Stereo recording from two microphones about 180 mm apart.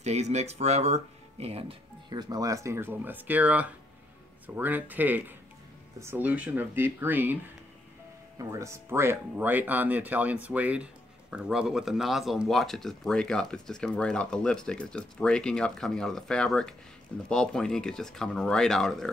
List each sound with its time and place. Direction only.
0.0 s speech: 40° right (ahead or behind); by 7.3 s 10° right (ahead or behind)
8.4 s speech: 15° right (ahead or behind); by 19.0 s centre (ahead or behind)